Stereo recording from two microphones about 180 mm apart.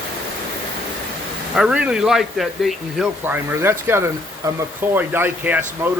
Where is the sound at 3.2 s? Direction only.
10° right (ahead or behind).